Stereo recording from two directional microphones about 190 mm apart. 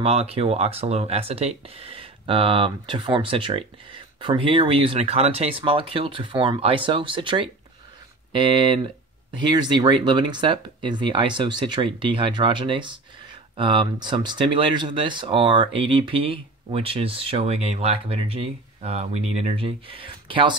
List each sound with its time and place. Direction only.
0.0 s speech: 30° right (ahead or behind)